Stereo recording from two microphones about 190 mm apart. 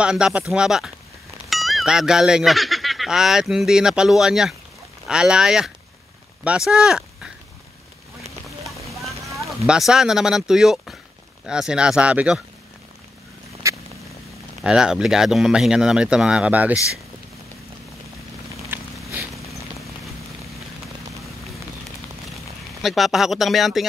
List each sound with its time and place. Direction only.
0.0 s speech: 5° right (ahead or behind)
8.8 s clip-clop: centre (ahead or behind)
9.3 s a sound: 15° right (ahead or behind)
9.7 s speech: centre (ahead or behind)
13.6 s a sound: 15° right (ahead or behind)
14.6 s speech: 5° right (ahead or behind)
19.1 s zipper: centre (ahead or behind)
22.8 s speech: centre (ahead or behind)